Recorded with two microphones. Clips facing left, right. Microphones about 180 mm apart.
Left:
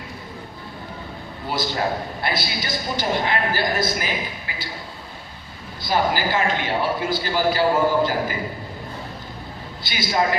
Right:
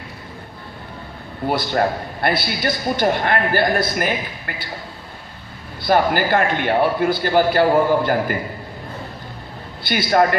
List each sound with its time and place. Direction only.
1.5 s a man's voice: 55° right (ahead or behind)
5.8 s a man's voice: 55° right (ahead or behind)
9.8 s a man's voice: 60° right (ahead or behind)